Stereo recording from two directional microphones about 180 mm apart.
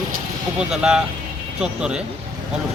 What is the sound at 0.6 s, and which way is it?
Speech, 5° right (ahead or behind).